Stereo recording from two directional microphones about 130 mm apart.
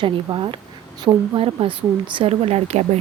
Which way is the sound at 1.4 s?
45° right (ahead or behind).